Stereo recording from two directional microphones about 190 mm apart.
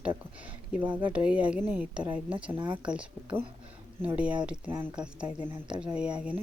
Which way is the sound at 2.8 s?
5° right (ahead or behind).